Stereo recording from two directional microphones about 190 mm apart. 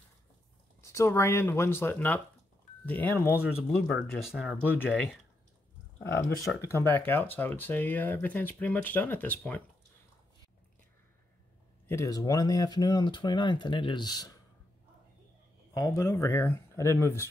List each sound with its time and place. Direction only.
0.7 s speech: 15° left (ahead or behind); by 4.7 s 5° right (ahead or behind)
5.9 s speech: 15° left (ahead or behind)
11.9 s speech: 15° left (ahead or behind)
15.7 s speech: 15° left (ahead or behind)